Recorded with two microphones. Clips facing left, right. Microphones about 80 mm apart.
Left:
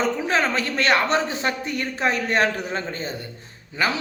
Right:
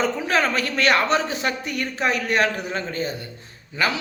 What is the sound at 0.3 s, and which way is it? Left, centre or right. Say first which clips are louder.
A man's voice: even; left.